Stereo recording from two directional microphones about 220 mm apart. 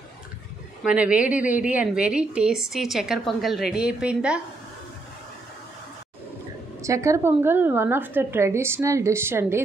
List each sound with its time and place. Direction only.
0.8 s a woman's voice: 5° right (ahead or behind)
6.8 s a woman's voice: 15° right (ahead or behind)